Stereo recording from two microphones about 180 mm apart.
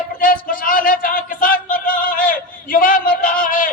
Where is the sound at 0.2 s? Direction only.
50° left (ahead or behind).